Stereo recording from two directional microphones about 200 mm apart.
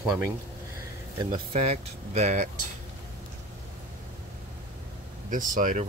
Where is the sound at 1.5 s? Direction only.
30° right (ahead or behind).